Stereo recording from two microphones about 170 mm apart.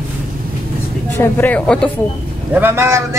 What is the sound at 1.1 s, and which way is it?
Speech, 10° left (ahead or behind).